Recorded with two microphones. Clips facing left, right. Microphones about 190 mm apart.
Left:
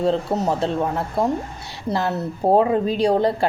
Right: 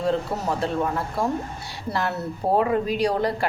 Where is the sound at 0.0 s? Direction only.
25° left (ahead or behind).